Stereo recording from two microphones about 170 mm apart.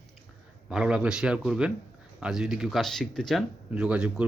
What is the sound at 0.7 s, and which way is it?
Speech, 5° right (ahead or behind).